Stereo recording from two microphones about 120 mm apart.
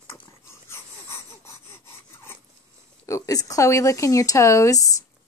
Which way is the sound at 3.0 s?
25° left (ahead or behind).